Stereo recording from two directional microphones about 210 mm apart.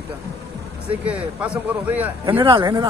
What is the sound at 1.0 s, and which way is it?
A man's voice, 5° right (ahead or behind).